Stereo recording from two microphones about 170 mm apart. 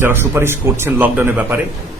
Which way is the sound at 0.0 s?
15° right (ahead or behind).